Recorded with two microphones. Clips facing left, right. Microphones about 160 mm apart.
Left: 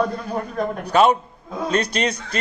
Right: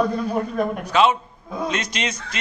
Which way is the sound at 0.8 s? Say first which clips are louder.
Left 3 dB; 45° left (ahead or behind).